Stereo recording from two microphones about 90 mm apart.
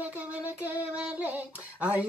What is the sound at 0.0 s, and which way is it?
Child singing, 20° right (ahead or behind).